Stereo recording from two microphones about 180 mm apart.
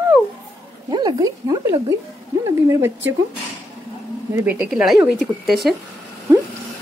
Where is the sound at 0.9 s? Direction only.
25° right (ahead or behind).